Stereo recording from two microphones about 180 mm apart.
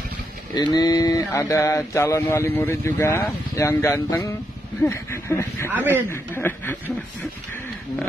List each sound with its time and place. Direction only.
0.7 s a man's voice: 20° left (ahead or behind)
5.7 s speech: 10° right (ahead or behind)
6.0 s a man's voice: 10° left (ahead or behind)